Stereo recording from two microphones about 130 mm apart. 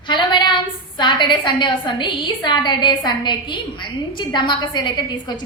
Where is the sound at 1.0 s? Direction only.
35° left (ahead or behind).